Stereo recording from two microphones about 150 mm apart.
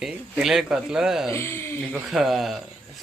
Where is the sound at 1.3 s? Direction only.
15° left (ahead or behind).